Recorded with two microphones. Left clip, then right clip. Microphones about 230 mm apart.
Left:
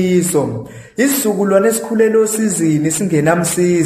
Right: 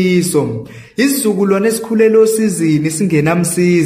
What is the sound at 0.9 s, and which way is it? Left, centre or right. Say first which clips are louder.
A man's voice: right 1 dB; right.